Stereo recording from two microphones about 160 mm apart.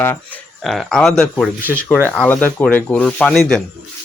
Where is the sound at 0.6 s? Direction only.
Centre (ahead or behind).